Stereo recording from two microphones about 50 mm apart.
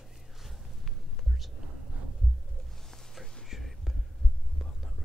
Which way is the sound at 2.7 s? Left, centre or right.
Centre.